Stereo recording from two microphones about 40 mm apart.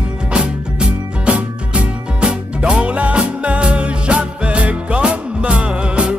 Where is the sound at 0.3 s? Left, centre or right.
Right.